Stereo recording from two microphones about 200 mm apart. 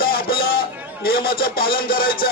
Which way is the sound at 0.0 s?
45° left (ahead or behind).